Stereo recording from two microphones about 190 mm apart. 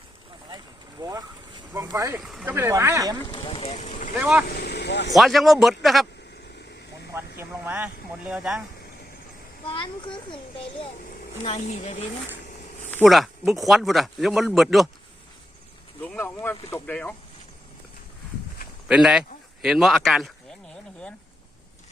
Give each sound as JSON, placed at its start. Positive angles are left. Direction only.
{"t": 0.5, "sound": "boat", "side_deg": -20}
{"t": 2.2, "sound": "speech", "side_deg": -5}
{"t": 3.2, "sound": "speech", "side_deg": 25}
{"t": 4.2, "sound": "speech", "side_deg": -5}
{"t": 4.4, "sound": "speech", "side_deg": 60}
{"t": 5.1, "sound": "speech", "side_deg": 0}
{"t": 6.6, "sound": "vehicle", "side_deg": 60}
{"t": 7.3, "sound": "speech", "side_deg": -10}
{"t": 11.4, "sound": "speech", "side_deg": 35}
{"t": 13.1, "sound": "speech", "side_deg": 0}
{"t": 16.0, "sound": "speech", "side_deg": 10}
{"t": 18.9, "sound": "speech", "side_deg": -5}